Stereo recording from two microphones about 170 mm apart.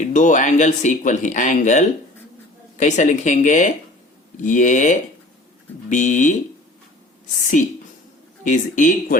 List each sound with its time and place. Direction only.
0.1 s speech: 45° left (ahead or behind)
7.3 s speech: 50° left (ahead or behind)